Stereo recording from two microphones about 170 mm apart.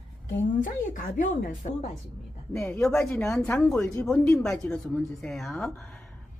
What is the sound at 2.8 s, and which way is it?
A woman's voice, 5° left (ahead or behind).